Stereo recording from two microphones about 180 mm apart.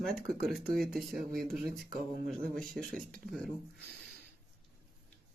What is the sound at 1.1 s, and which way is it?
Speech, 55° right (ahead or behind).